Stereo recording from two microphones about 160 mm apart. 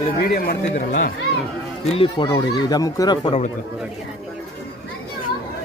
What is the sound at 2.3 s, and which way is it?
Speech, 25° left (ahead or behind).